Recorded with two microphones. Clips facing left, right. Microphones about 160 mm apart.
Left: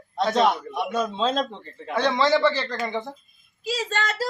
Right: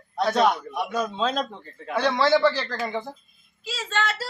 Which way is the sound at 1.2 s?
25° left (ahead or behind).